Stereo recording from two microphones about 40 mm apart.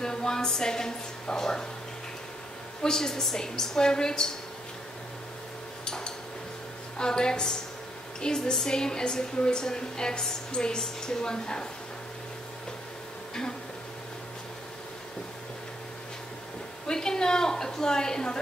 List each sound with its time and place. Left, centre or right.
0.0 s a woman's voice: centre
2.8 s a woman's voice: centre
5.9 s a sound: centre
7.0 s a woman's voice: centre
13.3 s speech: centre
16.8 s a woman's voice: centre